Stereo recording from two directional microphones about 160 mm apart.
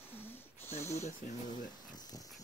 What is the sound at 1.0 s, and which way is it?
Speech, 45° left (ahead or behind).